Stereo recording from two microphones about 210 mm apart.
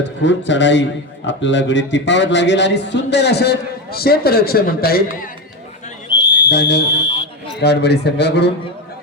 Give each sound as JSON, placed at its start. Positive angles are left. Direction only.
{"t": 0.0, "sound": "a man's voice", "side_deg": 60}
{"t": 6.1, "sound": "a sound", "side_deg": 20}
{"t": 6.5, "sound": "speech", "side_deg": 55}